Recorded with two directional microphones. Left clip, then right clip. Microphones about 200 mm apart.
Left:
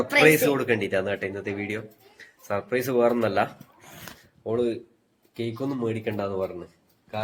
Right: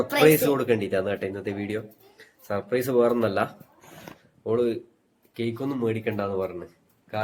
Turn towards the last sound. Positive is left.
turn(degrees=-10)  # may be behind; listen again after turning